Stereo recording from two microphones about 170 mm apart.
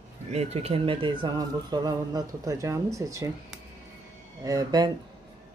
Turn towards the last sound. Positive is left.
turn(degrees=-20)  # may be behind; listen again after turning